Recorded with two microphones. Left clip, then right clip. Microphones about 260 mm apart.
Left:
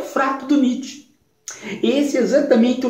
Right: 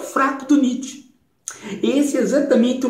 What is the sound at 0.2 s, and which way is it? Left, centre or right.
Speech, centre.